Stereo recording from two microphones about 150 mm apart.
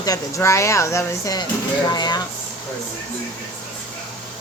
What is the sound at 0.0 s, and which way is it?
Speech, 20° left (ahead or behind).